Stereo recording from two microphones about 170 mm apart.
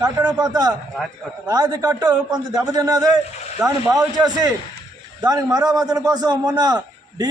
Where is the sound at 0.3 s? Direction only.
25° right (ahead or behind).